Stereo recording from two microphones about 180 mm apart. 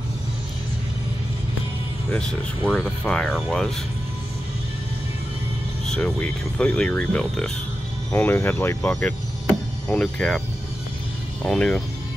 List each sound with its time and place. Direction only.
2.1 s speech: 5° left (ahead or behind)
5.9 s speech: 5° left (ahead or behind)
11.4 s speech: 5° left (ahead or behind)